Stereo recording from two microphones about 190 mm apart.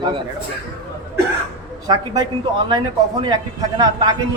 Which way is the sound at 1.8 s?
20° right (ahead or behind).